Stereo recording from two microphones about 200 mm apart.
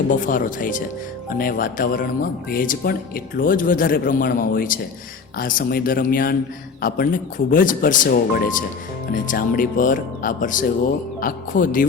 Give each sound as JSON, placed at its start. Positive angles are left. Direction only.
{"t": 0.1, "sound": "speech", "side_deg": 45}